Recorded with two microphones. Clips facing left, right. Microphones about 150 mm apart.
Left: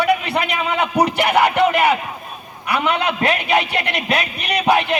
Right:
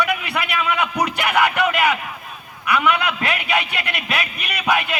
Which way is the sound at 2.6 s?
30° left (ahead or behind).